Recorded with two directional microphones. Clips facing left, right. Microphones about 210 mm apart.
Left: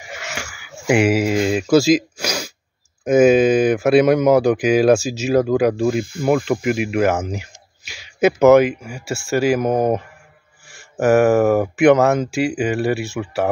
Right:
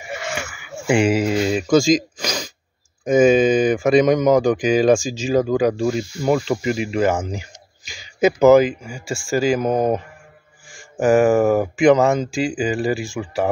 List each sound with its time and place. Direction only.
0.3 s a sound: 10° left (ahead or behind)
3.0 s speech: 5° left (ahead or behind)
5.9 s speech: 55° left (ahead or behind)
6.2 s speech: 5° left (ahead or behind)
12.3 s speech: 65° left (ahead or behind)
12.9 s speech: 5° left (ahead or behind)